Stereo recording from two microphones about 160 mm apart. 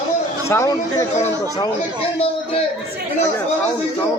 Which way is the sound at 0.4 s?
20° left (ahead or behind).